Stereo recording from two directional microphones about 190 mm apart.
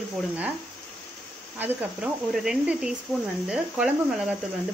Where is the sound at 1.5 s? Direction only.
10° right (ahead or behind).